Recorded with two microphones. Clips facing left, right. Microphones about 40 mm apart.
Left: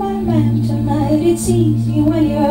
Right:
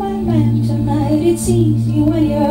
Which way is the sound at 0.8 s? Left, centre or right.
Centre.